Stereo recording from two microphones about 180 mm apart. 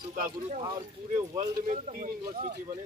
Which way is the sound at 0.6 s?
25° right (ahead or behind).